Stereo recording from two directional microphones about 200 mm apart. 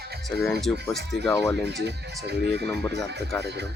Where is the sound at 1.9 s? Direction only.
55° right (ahead or behind).